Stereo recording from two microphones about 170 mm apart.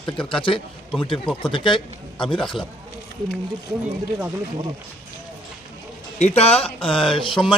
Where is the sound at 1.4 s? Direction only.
30° left (ahead or behind).